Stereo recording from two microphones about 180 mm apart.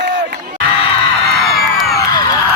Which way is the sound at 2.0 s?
20° left (ahead or behind).